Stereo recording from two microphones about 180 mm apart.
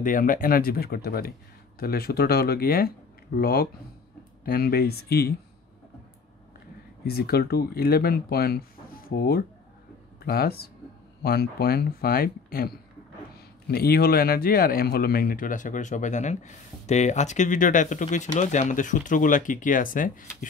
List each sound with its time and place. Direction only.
0.0 s speech: 50° left (ahead or behind)
7.1 s speech: 60° left (ahead or behind)